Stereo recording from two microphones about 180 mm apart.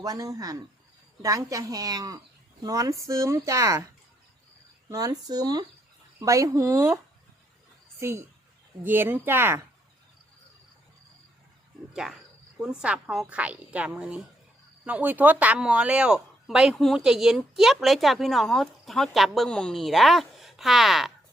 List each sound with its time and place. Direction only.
0.0 s a woman's voice: 20° right (ahead or behind)
4.9 s a woman's voice: 20° right (ahead or behind)
12.0 s a woman's voice: 5° right (ahead or behind)